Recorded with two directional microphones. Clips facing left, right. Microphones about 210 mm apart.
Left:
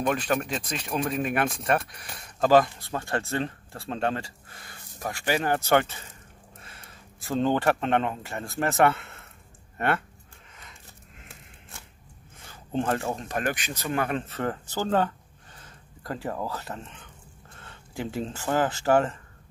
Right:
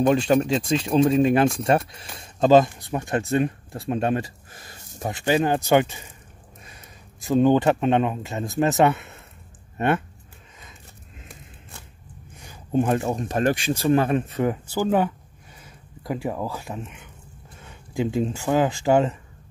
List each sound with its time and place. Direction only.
0.0 s a man's voice: 25° right (ahead or behind)
12.4 s speech: 15° right (ahead or behind)
14.1 s speech: 15° right (ahead or behind)